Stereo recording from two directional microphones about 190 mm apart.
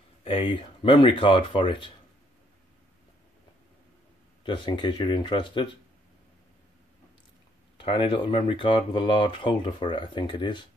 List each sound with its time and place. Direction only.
0.2 s speech: 30° left (ahead or behind)
4.4 s speech: 25° left (ahead or behind)
7.7 s speech: 25° left (ahead or behind)